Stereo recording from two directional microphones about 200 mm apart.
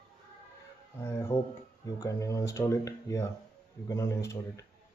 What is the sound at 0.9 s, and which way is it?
Speech, 15° left (ahead or behind).